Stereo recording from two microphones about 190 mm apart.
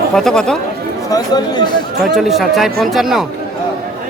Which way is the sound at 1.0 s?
20° left (ahead or behind).